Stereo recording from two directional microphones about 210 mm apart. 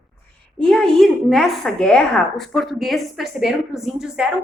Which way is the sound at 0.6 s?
5° left (ahead or behind).